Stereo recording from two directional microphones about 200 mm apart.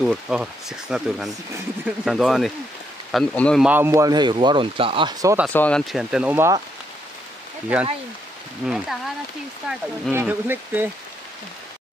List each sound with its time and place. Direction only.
0.0 s speech: centre (ahead or behind)
3.6 s speech: 10° right (ahead or behind)
5.5 s speech: 5° left (ahead or behind); by 6.6 s 10° right (ahead or behind)
7.7 s speech: 5° right (ahead or behind)